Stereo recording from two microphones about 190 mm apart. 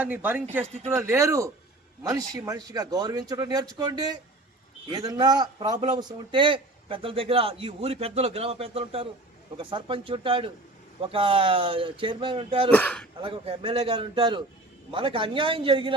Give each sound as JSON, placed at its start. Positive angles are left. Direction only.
{"t": 0.0, "sound": "a man's voice", "side_deg": -10}
{"t": 12.7, "sound": "speech", "side_deg": 5}
{"t": 13.2, "sound": "a man's voice", "side_deg": -30}